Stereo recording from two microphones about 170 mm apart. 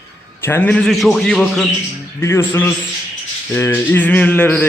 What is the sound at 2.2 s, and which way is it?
A man's voice, 15° left (ahead or behind).